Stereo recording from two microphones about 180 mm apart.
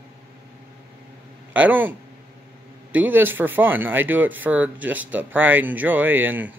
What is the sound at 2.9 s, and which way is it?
Speech, 10° right (ahead or behind).